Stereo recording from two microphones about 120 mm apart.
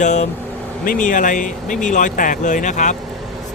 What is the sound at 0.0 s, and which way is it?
Speech, 80° left.